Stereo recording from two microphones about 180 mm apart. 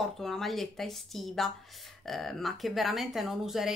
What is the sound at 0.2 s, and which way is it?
A woman's voice, centre (ahead or behind).